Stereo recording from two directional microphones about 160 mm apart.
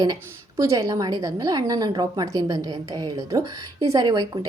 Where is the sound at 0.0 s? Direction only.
25° right (ahead or behind).